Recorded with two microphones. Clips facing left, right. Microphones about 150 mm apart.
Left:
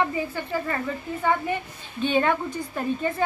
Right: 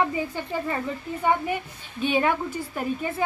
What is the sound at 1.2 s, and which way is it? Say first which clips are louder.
A woman's voice: right 1 dB; 10° right (ahead or behind).